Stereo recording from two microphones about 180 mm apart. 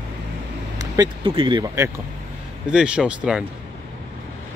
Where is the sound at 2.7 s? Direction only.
5° right (ahead or behind).